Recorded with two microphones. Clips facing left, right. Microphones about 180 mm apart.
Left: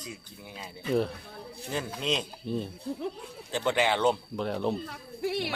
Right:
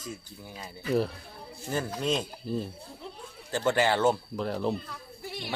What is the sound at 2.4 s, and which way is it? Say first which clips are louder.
Speech: left 1 dB; centre (ahead or behind).